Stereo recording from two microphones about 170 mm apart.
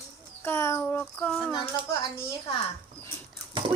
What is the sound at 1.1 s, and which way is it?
Speech, centre (ahead or behind).